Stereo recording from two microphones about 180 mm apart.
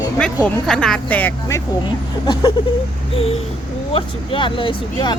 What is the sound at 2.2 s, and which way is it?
Speech, 25° left (ahead or behind).